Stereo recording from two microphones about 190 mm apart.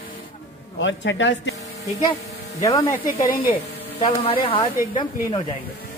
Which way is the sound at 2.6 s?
15° left (ahead or behind).